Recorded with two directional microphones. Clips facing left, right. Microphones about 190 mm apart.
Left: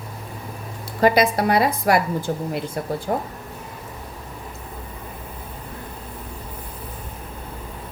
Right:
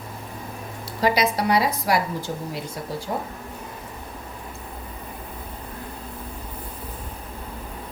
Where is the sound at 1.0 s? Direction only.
50° left (ahead or behind).